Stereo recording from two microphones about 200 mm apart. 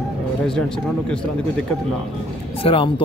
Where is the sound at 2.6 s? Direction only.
25° left (ahead or behind).